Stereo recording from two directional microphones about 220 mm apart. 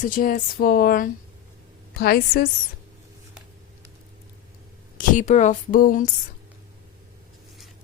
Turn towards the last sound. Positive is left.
turn(degrees=40)  # may be behind; listen again after turning